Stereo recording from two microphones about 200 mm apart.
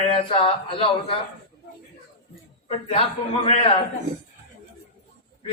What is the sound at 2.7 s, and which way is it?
A man's voice, 30° left (ahead or behind).